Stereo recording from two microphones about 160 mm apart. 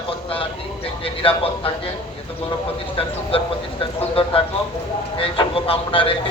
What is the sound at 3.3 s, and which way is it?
A man's voice, 35° left (ahead or behind).